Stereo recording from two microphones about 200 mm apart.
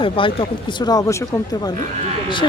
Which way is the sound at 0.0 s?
25° left (ahead or behind).